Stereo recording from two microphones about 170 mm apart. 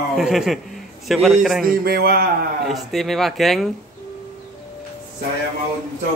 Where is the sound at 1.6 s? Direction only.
65° right (ahead or behind).